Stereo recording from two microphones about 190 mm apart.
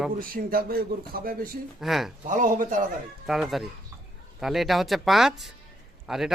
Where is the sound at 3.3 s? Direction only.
Centre (ahead or behind).